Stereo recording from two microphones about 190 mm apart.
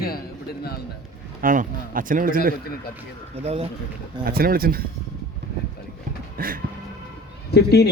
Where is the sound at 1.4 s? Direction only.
45° right (ahead or behind).